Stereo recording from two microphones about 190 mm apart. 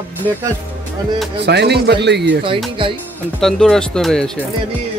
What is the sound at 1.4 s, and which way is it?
Speech, 60° right (ahead or behind).